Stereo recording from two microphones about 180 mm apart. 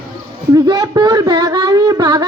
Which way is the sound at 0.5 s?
20° right (ahead or behind).